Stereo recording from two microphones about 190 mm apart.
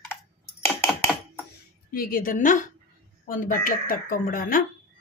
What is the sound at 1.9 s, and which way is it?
Speech, 50° left (ahead or behind).